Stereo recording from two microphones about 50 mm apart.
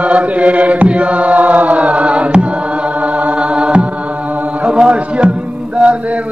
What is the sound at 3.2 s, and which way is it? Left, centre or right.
Music, right.